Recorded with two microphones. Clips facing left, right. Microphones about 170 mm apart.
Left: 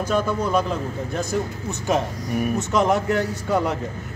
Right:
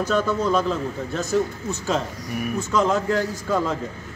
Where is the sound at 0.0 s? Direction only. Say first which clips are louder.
Right 1 dB; 10° left (ahead or behind).